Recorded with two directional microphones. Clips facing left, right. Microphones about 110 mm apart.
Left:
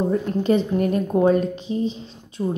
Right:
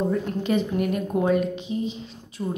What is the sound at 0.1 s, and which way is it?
A woman's voice, 30° left (ahead or behind).